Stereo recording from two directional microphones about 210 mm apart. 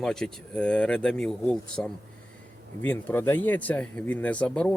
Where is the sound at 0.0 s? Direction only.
5° left (ahead or behind).